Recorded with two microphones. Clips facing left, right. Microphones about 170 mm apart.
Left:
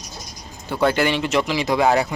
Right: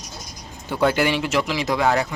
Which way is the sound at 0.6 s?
10° right (ahead or behind).